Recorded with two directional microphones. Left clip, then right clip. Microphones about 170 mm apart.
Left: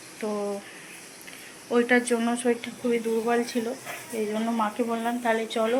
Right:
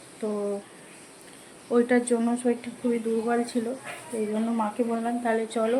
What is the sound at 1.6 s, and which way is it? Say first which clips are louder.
Speech: even; 20° right (ahead or behind).